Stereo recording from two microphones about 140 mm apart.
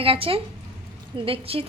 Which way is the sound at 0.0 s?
40° right (ahead or behind).